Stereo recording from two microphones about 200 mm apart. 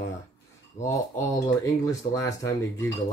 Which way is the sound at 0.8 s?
15° left (ahead or behind).